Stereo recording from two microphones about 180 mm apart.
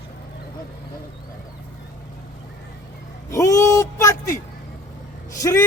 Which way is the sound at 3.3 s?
15° left (ahead or behind).